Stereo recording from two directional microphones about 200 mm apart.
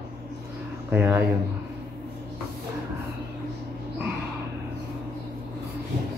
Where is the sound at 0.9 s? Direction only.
10° right (ahead or behind).